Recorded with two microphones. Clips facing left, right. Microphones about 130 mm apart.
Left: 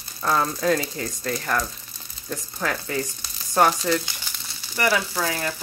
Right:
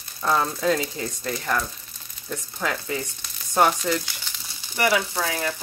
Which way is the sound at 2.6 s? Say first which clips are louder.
Left 1 dB; 15° right (ahead or behind).